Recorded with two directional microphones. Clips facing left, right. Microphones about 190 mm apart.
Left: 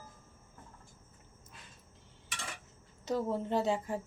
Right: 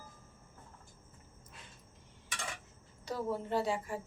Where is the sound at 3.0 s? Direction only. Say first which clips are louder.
Left 3 dB; 20° left (ahead or behind).